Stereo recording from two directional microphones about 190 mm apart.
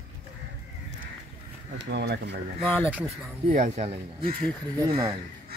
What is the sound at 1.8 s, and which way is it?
Speech, 65° right (ahead or behind).